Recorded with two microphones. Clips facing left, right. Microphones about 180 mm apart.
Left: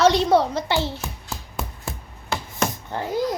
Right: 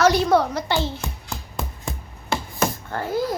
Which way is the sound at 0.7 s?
20° right (ahead or behind).